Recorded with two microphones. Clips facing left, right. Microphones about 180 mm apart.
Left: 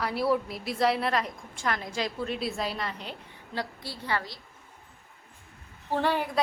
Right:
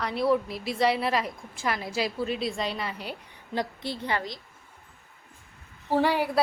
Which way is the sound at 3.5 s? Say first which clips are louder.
Right 5 dB; 20° right (ahead or behind).